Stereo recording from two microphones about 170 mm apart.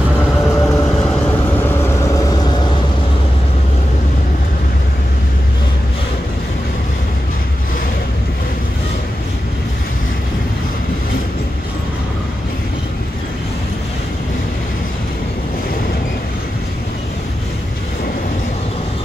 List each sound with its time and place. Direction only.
0.6 s vehicle: 20° left (ahead or behind)